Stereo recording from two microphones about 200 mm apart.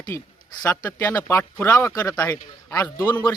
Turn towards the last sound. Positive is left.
turn(degrees=10)  # may be behind; listen again after turning